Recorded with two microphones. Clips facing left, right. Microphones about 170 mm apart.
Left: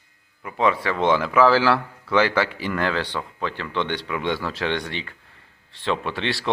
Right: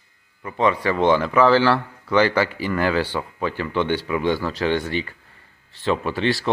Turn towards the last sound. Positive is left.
turn(degrees=0)  # may be behind; listen again after turning